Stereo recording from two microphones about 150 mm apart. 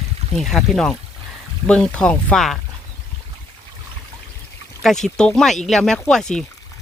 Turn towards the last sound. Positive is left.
turn(degrees=5)  # may be behind; listen again after turning